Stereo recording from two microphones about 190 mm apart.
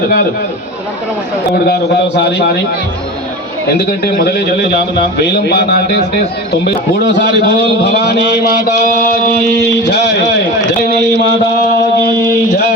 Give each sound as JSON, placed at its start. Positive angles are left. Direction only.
{"t": 1.6, "sound": "a man's voice", "side_deg": 60}
{"t": 3.8, "sound": "a man's voice", "side_deg": 60}
{"t": 9.9, "sound": "a man's voice", "side_deg": 60}